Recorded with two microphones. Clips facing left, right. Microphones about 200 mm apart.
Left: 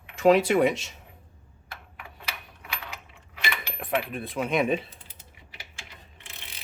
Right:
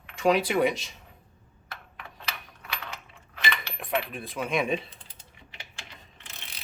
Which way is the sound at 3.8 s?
Centre (ahead or behind).